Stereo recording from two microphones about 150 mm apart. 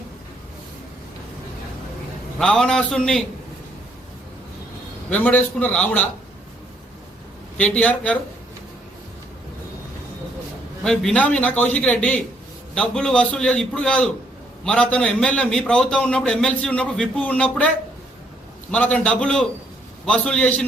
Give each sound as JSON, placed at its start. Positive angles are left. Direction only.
{"t": 2.4, "sound": "a man's voice", "side_deg": 5}
{"t": 5.1, "sound": "a man's voice", "side_deg": 10}
{"t": 7.5, "sound": "a man's voice", "side_deg": 10}
{"t": 10.8, "sound": "a man's voice", "side_deg": 5}
{"t": 18.7, "sound": "a man's voice", "side_deg": 10}